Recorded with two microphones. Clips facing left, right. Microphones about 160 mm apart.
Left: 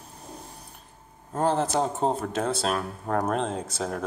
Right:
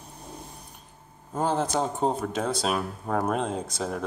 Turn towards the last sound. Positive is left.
turn(degrees=5)  # may be behind; listen again after turning